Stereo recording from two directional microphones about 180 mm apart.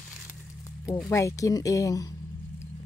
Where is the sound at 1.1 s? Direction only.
15° left (ahead or behind).